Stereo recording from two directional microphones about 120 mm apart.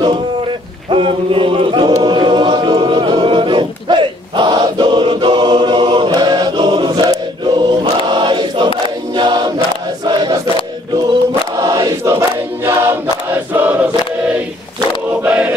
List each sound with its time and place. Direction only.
0.8 s a sound: 45° right (ahead or behind)
2.0 s choir: 40° right (ahead or behind)
11.6 s choir: 30° right (ahead or behind)
15.2 s choir: 10° right (ahead or behind)